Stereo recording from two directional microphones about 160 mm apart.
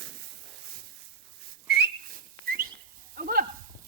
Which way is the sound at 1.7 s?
90° right.